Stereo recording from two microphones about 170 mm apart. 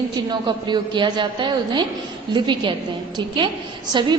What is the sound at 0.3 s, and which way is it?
A woman's voice, 25° right (ahead or behind).